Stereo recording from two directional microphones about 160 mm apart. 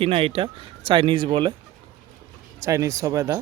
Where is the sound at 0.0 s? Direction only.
35° right (ahead or behind).